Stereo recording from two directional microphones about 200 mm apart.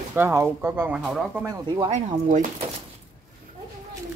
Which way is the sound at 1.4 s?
20° right (ahead or behind).